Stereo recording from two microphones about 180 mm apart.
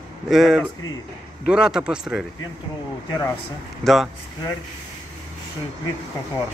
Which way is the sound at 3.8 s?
Centre (ahead or behind).